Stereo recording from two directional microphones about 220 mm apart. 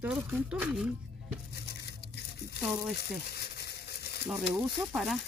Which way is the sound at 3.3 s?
50° left (ahead or behind).